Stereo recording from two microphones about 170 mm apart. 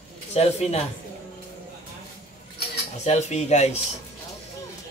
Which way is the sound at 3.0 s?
40° left (ahead or behind).